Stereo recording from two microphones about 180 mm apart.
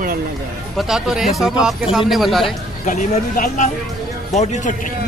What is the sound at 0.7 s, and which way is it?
Speech, centre (ahead or behind).